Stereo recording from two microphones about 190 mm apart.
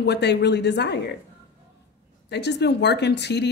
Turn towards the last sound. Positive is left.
turn(degrees=65)  # may be behind; listen again after turning